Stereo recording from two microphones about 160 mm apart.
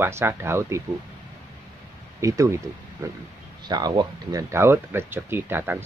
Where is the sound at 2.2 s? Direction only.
20° right (ahead or behind).